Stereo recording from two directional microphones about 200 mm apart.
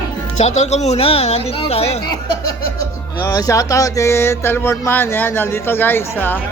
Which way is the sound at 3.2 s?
20° left (ahead or behind).